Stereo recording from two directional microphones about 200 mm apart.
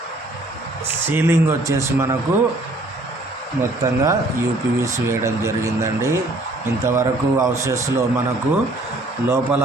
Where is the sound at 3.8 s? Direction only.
15° right (ahead or behind).